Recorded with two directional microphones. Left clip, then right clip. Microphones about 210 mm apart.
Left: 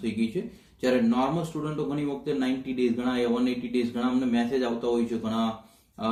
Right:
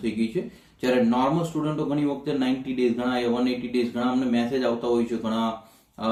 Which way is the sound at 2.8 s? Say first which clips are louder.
Right 2 dB; 5° right (ahead or behind).